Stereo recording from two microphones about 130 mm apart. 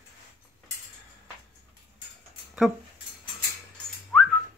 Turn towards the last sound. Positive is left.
turn(degrees=5)  # may be behind; listen again after turning